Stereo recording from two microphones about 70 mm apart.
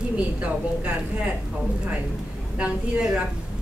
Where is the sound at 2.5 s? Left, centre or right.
Centre.